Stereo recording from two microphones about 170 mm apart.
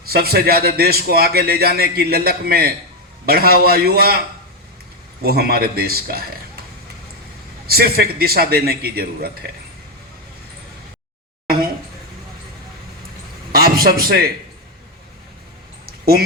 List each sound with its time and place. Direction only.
0.1 s a man's voice: 65° right (ahead or behind)
5.2 s a man's voice: 65° right (ahead or behind)
7.7 s a man's voice: 65° right (ahead or behind)
13.5 s a man's voice: 60° right (ahead or behind)